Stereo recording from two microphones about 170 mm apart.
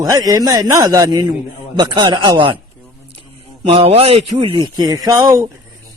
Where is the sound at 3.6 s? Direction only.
35° right (ahead or behind).